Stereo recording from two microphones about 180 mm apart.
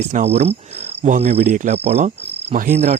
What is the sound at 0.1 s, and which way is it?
Cricket, 35° right (ahead or behind).